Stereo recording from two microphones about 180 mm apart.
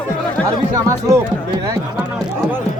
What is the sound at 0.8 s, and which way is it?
Speech, 15° right (ahead or behind).